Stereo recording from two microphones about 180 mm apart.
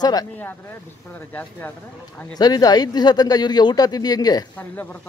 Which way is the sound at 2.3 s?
20° left (ahead or behind).